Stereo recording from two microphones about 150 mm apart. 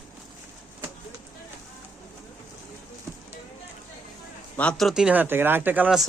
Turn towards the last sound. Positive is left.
turn(degrees=-10)  # may be behind; listen again after turning